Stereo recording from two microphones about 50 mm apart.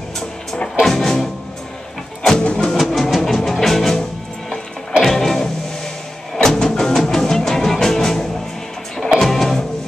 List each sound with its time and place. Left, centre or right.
0.7 s music: centre
2.3 s music: centre
2.7 s music: centre
5.0 s music: centre